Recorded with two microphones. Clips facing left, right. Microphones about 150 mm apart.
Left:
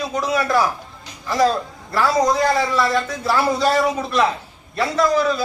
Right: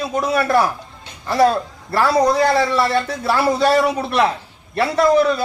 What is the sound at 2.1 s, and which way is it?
Speech, 60° right (ahead or behind).